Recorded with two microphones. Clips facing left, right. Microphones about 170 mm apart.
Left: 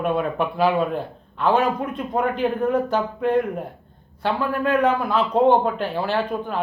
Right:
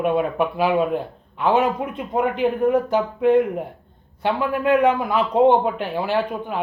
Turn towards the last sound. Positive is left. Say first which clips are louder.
# right 1 dB
turn(degrees=-15)  # may be behind; listen again after turning